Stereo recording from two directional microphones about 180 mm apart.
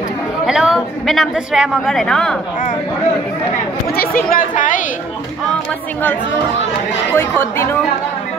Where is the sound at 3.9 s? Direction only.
55° left (ahead or behind).